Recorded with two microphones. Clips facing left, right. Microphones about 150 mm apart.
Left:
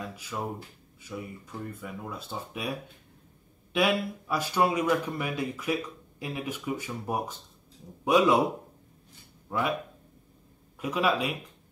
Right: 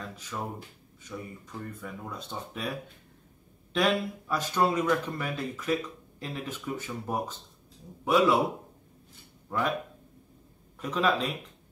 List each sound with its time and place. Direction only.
0.0 s a sound: 10° left (ahead or behind)
1.0 s speech: 10° left (ahead or behind)
9.5 s speech: 10° left (ahead or behind)
10.8 s speech: 10° left (ahead or behind)